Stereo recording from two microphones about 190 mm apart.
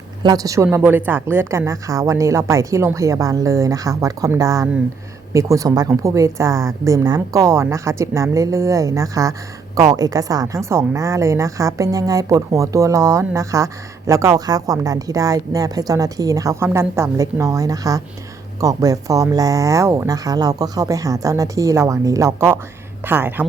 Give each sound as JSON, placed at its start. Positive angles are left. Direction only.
{"t": 0.2, "sound": "a woman's voice", "side_deg": -20}